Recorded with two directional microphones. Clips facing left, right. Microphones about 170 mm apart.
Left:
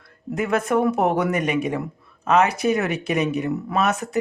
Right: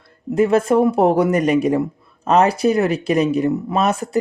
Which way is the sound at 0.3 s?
30° right (ahead or behind).